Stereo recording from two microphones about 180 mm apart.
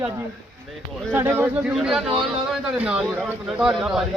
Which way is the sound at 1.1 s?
15° right (ahead or behind).